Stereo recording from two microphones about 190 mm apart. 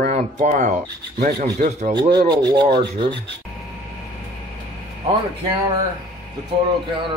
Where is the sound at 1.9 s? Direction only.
25° right (ahead or behind).